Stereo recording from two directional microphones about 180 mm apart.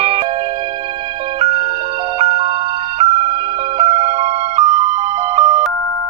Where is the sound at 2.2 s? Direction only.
35° right (ahead or behind).